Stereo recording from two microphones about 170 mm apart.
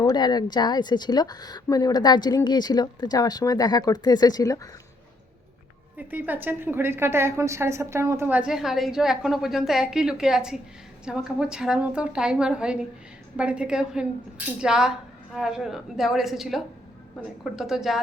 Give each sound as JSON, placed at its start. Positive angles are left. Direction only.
{"t": 0.0, "sound": "a woman's voice", "side_deg": 25}
{"t": 6.0, "sound": "a woman's voice", "side_deg": -10}